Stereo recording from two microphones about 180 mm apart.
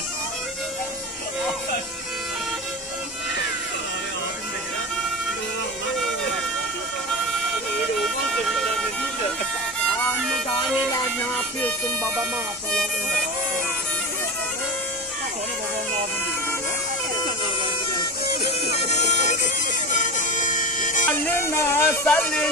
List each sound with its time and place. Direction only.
8.0 s vehicle: centre (ahead or behind)
10.3 s music: centre (ahead or behind)
18.9 s bagpipes: 40° left (ahead or behind)
21.3 s a sound: 15° left (ahead or behind)